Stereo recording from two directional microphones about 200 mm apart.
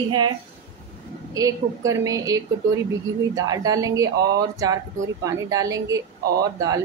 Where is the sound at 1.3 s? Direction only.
15° right (ahead or behind).